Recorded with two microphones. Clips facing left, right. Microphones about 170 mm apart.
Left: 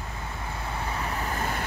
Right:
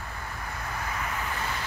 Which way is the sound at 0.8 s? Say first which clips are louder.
Left 2 dB; 30° left (ahead or behind).